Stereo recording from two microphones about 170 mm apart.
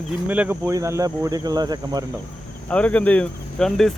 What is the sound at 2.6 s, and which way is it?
Speech, 10° left (ahead or behind).